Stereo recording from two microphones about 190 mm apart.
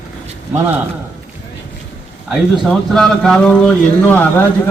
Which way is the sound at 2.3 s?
Centre (ahead or behind).